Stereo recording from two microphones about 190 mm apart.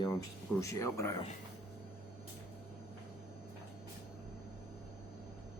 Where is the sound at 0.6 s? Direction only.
15° left (ahead or behind).